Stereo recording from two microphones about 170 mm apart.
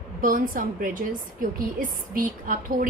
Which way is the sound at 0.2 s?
55° right (ahead or behind).